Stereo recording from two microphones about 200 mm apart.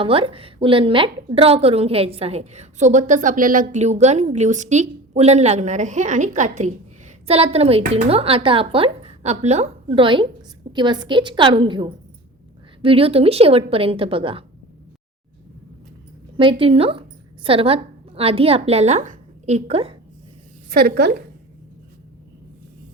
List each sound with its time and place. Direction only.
0.0 s a woman's voice: 25° right (ahead or behind)
16.4 s a woman's voice: 25° right (ahead or behind)
20.7 s a woman's voice: 50° right (ahead or behind)